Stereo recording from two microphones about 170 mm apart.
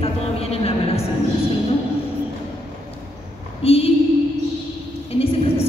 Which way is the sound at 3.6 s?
35° left (ahead or behind).